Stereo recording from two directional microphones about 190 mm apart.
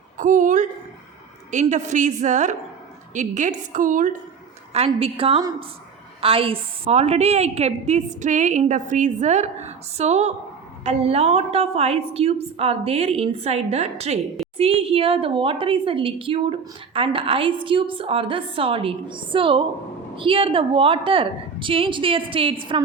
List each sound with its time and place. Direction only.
0.2 s a woman's voice: 45° right (ahead or behind)
4.9 s a woman's voice: 30° right (ahead or behind)